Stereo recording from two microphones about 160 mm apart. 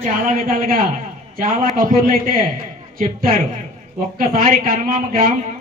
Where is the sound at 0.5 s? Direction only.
65° right (ahead or behind).